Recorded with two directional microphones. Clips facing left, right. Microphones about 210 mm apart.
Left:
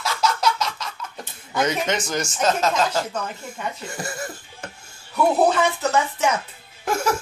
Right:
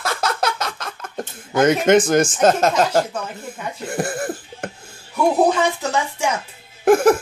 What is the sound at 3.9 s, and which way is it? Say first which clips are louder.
Cough: right 8 dB; 55° right (ahead or behind).